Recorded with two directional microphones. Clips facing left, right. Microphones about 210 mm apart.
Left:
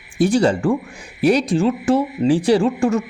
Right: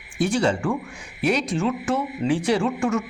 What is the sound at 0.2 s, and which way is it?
A man's voice, 35° left (ahead or behind).